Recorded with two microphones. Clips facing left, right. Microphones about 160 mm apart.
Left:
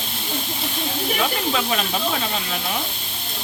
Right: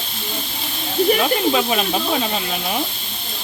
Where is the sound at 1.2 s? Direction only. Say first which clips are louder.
Right 5 dB; 15° right (ahead or behind).